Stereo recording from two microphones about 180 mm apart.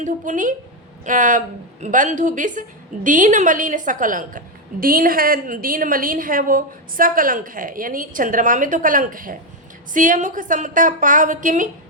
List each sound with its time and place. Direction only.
0.0 s a woman's voice: 45° right (ahead or behind)